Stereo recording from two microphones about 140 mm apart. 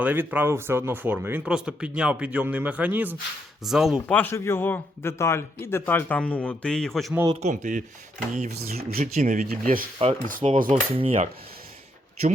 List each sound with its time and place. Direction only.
0.0 s speech: 10° right (ahead or behind)
3.6 s speech: centre (ahead or behind)
4.1 s a man's voice: 15° left (ahead or behind)
7.4 s speech: 65° right (ahead or behind)
8.8 s speech: 90° right
9.1 s speech: 65° right (ahead or behind)
10.2 s cutlery: 75° right (ahead or behind)
10.7 s cutlery: 40° right (ahead or behind)